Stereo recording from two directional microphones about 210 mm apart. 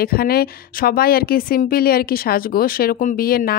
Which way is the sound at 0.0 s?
45° left (ahead or behind).